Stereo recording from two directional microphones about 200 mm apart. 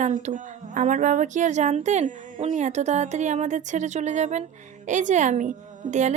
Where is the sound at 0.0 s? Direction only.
35° right (ahead or behind).